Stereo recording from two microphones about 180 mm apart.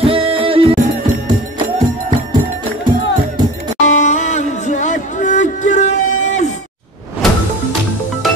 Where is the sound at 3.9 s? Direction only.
40° left (ahead or behind).